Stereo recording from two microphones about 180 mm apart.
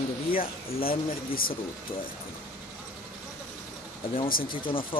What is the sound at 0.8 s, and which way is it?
Speech, 55° left (ahead or behind).